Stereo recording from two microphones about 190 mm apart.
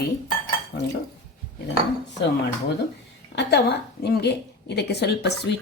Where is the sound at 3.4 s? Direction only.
60° left (ahead or behind).